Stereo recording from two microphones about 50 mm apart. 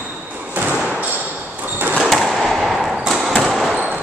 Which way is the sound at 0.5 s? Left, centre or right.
Right.